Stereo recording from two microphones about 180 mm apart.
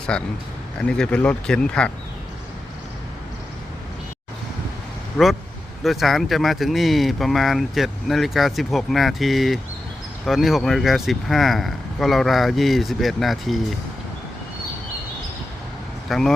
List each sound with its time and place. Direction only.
0.1 s speech: 5° left (ahead or behind)
5.1 s speech: centre (ahead or behind)
16.0 s speech: centre (ahead or behind)